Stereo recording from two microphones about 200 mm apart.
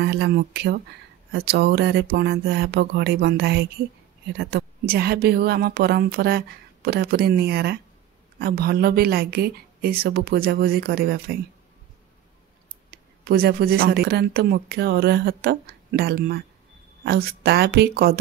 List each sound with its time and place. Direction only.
0.0 s speech: 55° right (ahead or behind)
12.9 s speech: 50° right (ahead or behind)